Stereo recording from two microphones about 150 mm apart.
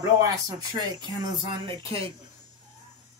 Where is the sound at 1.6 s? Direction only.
35° right (ahead or behind).